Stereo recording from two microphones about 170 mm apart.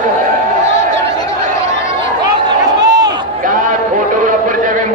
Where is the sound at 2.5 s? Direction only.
25° right (ahead or behind).